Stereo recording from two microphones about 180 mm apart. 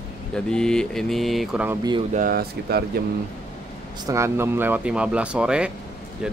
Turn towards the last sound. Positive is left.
turn(degrees=-5)  # may be behind; listen again after turning